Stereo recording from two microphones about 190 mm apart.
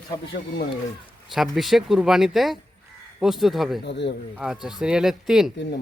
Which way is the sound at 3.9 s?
65° left (ahead or behind).